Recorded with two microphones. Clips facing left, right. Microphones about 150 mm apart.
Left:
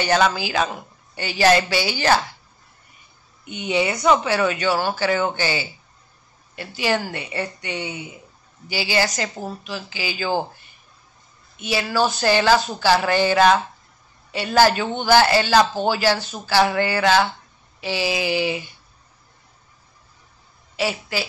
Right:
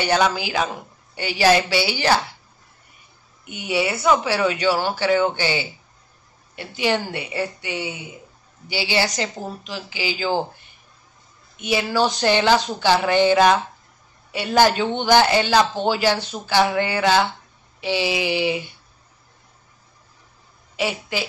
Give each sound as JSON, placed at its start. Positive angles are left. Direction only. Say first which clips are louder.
{"t": 0.0, "sound": "a woman's voice", "louder": "left 1 dB", "side_deg": -15}
{"t": 3.4, "sound": "speech", "louder": "left 1 dB", "side_deg": 20}
{"t": 4.2, "sound": "a woman's voice", "louder": "even", "side_deg": -10}
{"t": 11.6, "sound": "a woman's voice", "louder": "right 1 dB", "side_deg": -15}
{"t": 20.7, "sound": "a woman's voice", "louder": "even", "side_deg": -15}